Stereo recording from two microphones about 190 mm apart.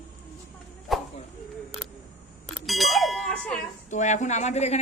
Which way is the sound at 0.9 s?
Centre (ahead or behind).